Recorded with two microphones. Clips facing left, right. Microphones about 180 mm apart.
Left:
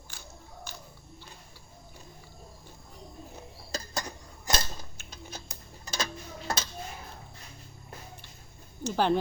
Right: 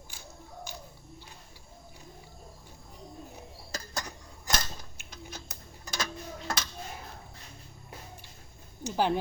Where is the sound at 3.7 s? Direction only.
30° left (ahead or behind).